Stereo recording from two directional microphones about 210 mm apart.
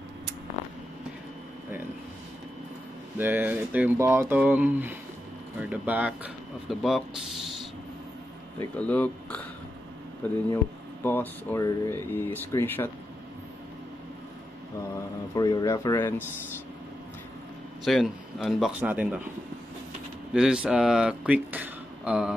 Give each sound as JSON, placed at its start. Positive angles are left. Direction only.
{"t": 3.2, "sound": "speech", "side_deg": -10}
{"t": 8.5, "sound": "speech", "side_deg": 5}
{"t": 11.1, "sound": "speech", "side_deg": 10}
{"t": 15.3, "sound": "speech", "side_deg": 20}
{"t": 17.8, "sound": "speech", "side_deg": 0}
{"t": 20.3, "sound": "speech", "side_deg": -5}